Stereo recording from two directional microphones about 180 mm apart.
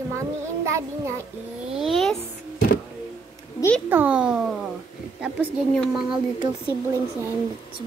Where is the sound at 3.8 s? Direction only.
10° right (ahead or behind).